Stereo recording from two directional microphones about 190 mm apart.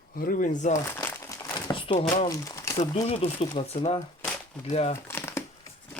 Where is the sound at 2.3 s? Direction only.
15° left (ahead or behind).